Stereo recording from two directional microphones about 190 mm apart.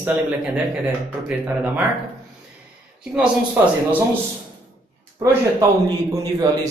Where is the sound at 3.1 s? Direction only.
5° right (ahead or behind).